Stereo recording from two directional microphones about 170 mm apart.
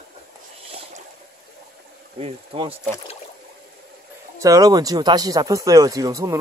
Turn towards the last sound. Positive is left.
turn(degrees=-20)  # may be behind; listen again after turning